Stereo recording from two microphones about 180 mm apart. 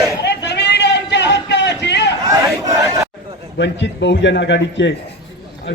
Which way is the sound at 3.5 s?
75° left (ahead or behind).